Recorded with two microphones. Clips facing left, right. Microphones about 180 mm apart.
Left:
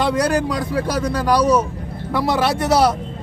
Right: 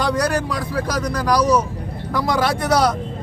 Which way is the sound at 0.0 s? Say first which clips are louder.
Left 2 dB; 30° left (ahead or behind).